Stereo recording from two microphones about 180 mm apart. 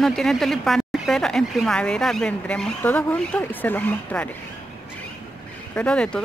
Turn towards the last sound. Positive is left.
turn(degrees=5)  # may be behind; listen again after turning